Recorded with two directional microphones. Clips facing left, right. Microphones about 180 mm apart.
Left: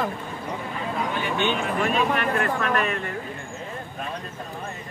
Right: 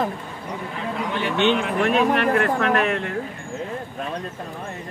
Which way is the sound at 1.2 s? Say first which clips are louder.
Right 7 dB; 70° right (ahead or behind).